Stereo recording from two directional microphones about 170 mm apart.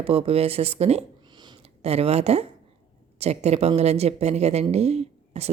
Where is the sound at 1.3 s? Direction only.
25° right (ahead or behind).